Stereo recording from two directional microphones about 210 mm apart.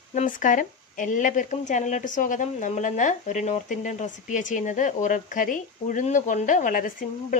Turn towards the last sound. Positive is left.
turn(degrees=40)  # may be behind; listen again after turning